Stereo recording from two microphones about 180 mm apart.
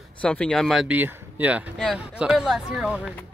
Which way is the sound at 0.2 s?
5° left (ahead or behind).